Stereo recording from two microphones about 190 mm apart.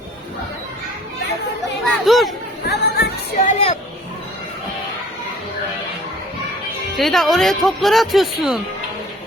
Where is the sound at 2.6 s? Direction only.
60° left (ahead or behind).